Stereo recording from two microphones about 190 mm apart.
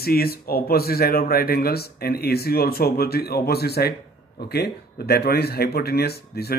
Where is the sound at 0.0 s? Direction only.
55° left (ahead or behind).